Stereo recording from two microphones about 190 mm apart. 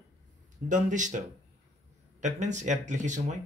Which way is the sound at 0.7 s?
40° right (ahead or behind).